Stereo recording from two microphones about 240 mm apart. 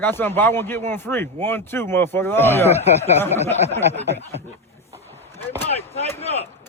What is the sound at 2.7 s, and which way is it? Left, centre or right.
Snicker, left.